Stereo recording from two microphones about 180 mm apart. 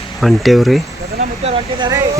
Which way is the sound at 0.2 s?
Centre (ahead or behind).